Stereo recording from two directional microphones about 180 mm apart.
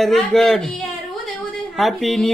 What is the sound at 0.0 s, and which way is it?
Speech, centre (ahead or behind).